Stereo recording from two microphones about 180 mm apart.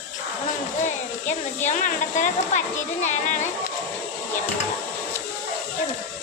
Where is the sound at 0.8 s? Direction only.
40° left (ahead or behind).